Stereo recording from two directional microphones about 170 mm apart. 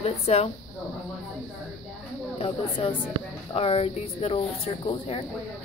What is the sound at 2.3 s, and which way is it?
Speech, 35° left (ahead or behind).